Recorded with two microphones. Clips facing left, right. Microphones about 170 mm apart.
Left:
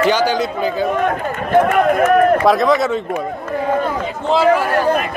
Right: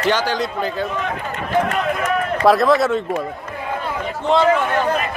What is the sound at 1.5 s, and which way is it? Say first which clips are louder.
Speech: left 7 dB; 55° left (ahead or behind).